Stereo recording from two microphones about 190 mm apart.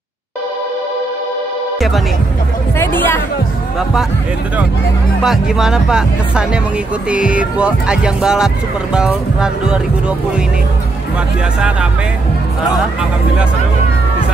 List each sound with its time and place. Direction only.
2.8 s speech: 10° left (ahead or behind)
5.2 s speech: centre (ahead or behind)